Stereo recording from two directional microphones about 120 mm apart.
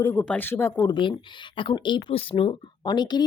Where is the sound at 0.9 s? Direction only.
40° left (ahead or behind).